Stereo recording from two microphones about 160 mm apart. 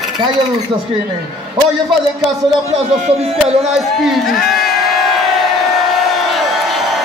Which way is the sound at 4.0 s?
Centre (ahead or behind).